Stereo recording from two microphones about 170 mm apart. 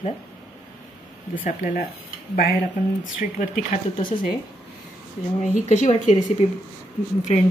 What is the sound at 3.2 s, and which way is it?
Speech, 50° left (ahead or behind).